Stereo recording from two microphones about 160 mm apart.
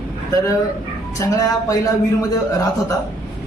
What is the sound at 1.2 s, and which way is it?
Speech, 20° left (ahead or behind).